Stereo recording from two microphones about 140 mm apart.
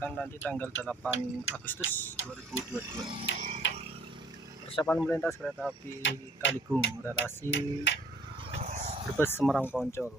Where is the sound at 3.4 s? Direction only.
50° right (ahead or behind).